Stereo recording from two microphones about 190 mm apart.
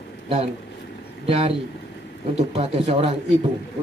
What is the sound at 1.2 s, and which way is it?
Speech, 30° right (ahead or behind).